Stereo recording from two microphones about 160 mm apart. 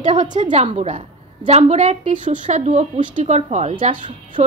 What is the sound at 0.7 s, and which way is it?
A woman's voice, 45° right (ahead or behind).